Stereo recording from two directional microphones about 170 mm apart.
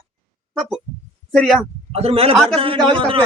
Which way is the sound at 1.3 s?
Centre (ahead or behind).